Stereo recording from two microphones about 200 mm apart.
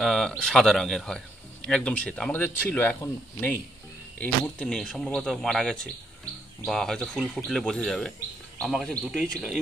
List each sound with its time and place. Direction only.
0.0 s speech: centre (ahead or behind)